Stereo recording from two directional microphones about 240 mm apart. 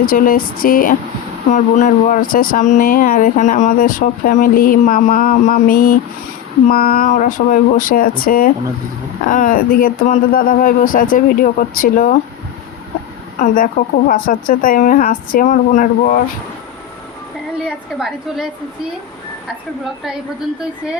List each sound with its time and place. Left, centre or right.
0.0 s speech: left
13.4 s speech: left